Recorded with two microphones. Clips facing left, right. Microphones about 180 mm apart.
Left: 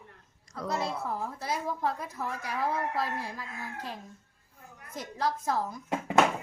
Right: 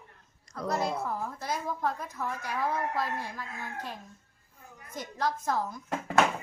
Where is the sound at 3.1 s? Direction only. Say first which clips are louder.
Even; 10° left (ahead or behind).